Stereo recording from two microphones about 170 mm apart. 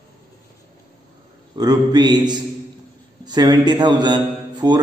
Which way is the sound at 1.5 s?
25° right (ahead or behind).